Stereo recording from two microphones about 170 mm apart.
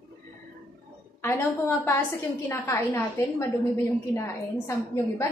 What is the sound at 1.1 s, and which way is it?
A woman's voice, 15° left (ahead or behind).